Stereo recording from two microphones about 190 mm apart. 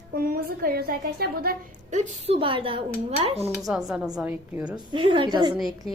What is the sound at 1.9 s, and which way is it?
Speech, 40° right (ahead or behind).